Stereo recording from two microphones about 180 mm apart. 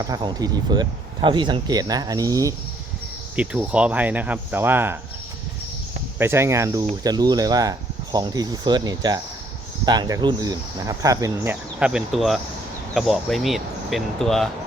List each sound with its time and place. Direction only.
0.0 s speech: 20° right (ahead or behind)
3.3 s speech: 5° right (ahead or behind)
6.1 s speech: 15° right (ahead or behind)
11.8 s speech: 5° right (ahead or behind)